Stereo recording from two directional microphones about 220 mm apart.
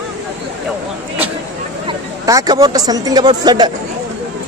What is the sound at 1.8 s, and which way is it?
Speech, 15° right (ahead or behind).